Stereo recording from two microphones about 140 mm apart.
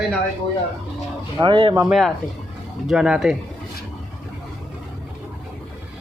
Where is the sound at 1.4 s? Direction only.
40° right (ahead or behind).